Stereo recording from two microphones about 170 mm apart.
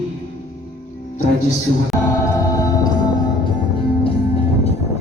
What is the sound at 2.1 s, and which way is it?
Music, 20° left (ahead or behind).